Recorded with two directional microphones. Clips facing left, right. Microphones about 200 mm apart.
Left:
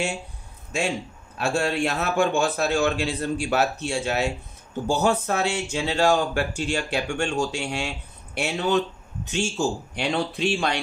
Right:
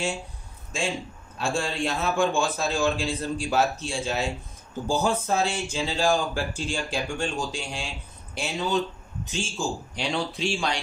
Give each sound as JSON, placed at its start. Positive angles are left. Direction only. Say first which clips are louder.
{"t": 1.4, "sound": "a man's voice", "louder": "left 4 dB", "side_deg": 65}